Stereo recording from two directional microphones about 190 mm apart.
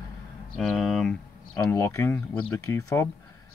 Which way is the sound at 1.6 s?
15° left (ahead or behind).